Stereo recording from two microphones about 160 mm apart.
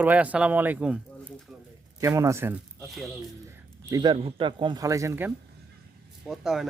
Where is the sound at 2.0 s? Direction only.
20° right (ahead or behind).